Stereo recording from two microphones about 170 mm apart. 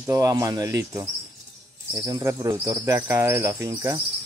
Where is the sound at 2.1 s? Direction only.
20° right (ahead or behind).